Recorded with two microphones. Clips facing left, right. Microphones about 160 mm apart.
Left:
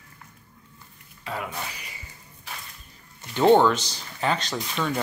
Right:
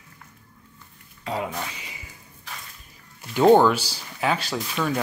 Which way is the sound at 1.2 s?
25° right (ahead or behind).